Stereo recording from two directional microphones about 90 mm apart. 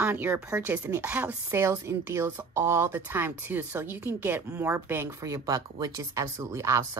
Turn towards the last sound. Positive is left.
turn(degrees=-35)  # may be behind; listen again after turning